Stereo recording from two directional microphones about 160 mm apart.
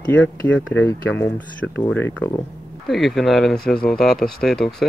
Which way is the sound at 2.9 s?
Centre (ahead or behind).